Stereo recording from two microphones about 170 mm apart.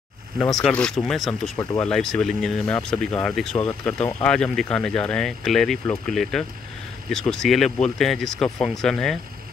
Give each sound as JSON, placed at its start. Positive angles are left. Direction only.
{"t": 0.6, "sound": "speech", "side_deg": 5}